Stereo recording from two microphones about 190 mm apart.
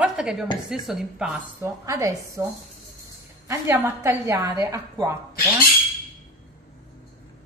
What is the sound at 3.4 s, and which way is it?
Speech, 10° right (ahead or behind).